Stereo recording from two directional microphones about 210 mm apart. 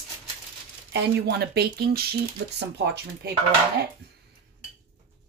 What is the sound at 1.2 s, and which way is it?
Speech, 50° right (ahead or behind).